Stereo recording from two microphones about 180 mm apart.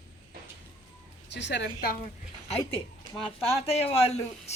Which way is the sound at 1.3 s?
75° left (ahead or behind).